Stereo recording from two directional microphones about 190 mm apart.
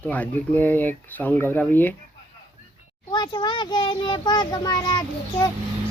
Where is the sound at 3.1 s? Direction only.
20° left (ahead or behind).